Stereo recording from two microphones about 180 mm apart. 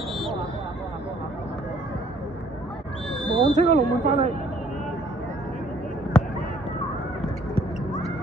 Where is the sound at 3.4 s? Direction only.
30° right (ahead or behind).